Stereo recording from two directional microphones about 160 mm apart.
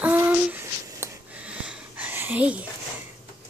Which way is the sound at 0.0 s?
10° right (ahead or behind).